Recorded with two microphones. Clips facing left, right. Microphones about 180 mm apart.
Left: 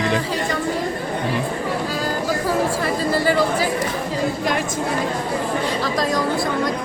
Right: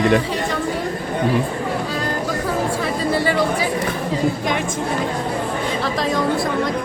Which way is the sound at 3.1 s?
Centre (ahead or behind).